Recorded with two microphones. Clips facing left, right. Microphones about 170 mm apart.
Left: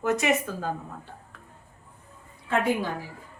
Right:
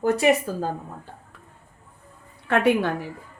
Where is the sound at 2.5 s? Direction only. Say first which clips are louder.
Right 5 dB; 70° right (ahead or behind).